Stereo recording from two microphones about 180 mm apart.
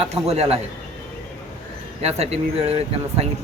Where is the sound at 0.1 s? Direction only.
35° right (ahead or behind).